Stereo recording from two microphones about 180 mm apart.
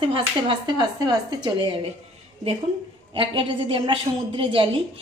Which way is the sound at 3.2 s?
30° right (ahead or behind).